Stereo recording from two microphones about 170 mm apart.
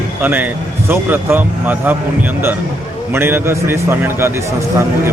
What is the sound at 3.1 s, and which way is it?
Speech, 15° right (ahead or behind).